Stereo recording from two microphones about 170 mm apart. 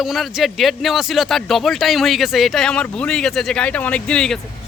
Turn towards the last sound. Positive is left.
turn(degrees=5)  # may be behind; listen again after turning